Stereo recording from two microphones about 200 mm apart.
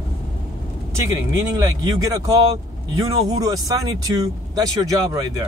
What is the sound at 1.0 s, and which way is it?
Speech, 20° right (ahead or behind).